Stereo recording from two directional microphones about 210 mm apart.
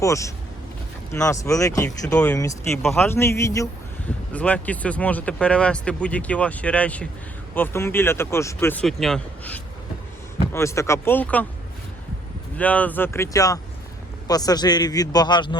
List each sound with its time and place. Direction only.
0.0 s speech: 15° left (ahead or behind)
12.5 s a man's voice: 5° left (ahead or behind)